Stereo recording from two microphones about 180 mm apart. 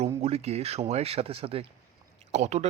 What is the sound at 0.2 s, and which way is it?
Speech, 35° right (ahead or behind).